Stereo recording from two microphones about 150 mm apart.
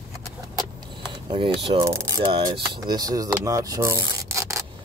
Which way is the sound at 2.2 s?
35° right (ahead or behind).